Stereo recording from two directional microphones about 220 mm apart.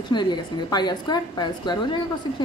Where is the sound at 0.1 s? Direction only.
20° left (ahead or behind).